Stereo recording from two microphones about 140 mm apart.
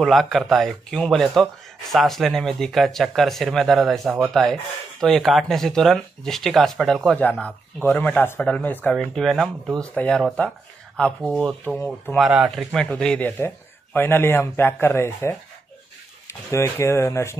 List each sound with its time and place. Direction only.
0.0 s speech: centre (ahead or behind)
12.2 s speech: 5° right (ahead or behind); by 17.4 s 20° left (ahead or behind)